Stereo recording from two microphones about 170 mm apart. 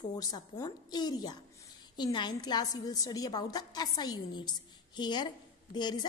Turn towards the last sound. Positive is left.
turn(degrees=25)  # may be behind; listen again after turning